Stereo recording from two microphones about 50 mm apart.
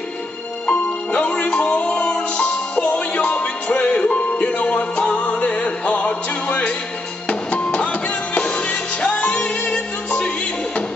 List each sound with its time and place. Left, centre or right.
0.7 s music: left